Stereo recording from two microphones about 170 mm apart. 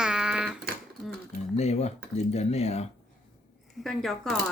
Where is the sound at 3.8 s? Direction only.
Centre (ahead or behind).